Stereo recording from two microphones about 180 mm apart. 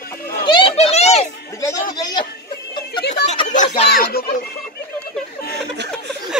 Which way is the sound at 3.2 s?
65° left (ahead or behind).